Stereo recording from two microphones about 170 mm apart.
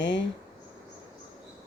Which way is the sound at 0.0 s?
90° left.